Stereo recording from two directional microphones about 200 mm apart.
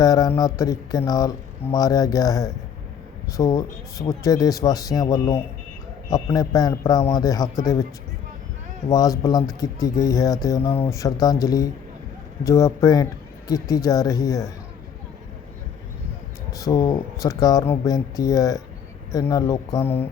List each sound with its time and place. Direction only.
0.0 s speech: 20° left (ahead or behind)
8.9 s speech: 15° left (ahead or behind)
16.6 s speech: 20° left (ahead or behind)